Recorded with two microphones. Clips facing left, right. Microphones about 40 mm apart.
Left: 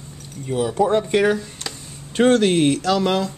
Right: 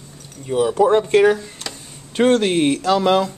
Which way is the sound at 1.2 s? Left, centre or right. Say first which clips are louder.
Right 4 dB; centre.